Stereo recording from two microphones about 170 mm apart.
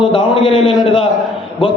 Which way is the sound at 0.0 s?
30° left (ahead or behind).